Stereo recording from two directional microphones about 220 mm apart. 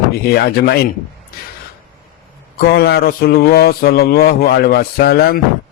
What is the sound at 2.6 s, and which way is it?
Speech, 45° left (ahead or behind).